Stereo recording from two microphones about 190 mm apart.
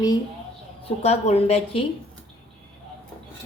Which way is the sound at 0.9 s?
35° left (ahead or behind).